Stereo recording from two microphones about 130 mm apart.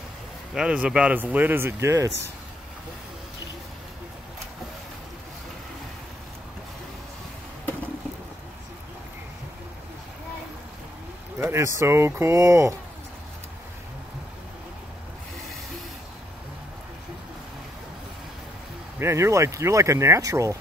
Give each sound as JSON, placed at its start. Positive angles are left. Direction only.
{"t": 0.6, "sound": "speech", "side_deg": -5}
{"t": 11.3, "sound": "speech", "side_deg": -20}
{"t": 18.9, "sound": "speech", "side_deg": -20}